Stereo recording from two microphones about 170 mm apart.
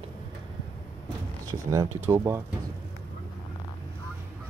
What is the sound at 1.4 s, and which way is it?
Speech, 20° right (ahead or behind).